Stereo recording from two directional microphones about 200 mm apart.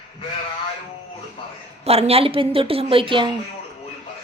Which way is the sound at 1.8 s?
30° right (ahead or behind).